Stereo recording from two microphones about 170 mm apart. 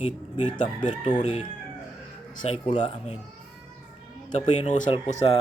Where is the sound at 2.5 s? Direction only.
40° left (ahead or behind).